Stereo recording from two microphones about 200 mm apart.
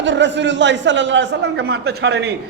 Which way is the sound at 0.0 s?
65° right (ahead or behind).